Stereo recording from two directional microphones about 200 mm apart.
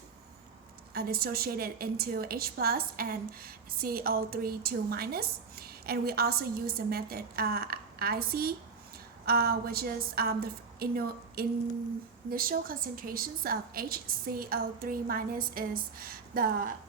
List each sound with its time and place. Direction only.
0.9 s a woman's voice: 50° right (ahead or behind)